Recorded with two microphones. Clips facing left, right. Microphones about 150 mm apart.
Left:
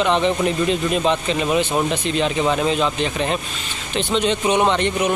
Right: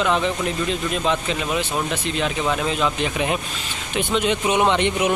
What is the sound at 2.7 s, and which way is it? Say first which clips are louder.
Speech: left 2 dB; 5° right (ahead or behind).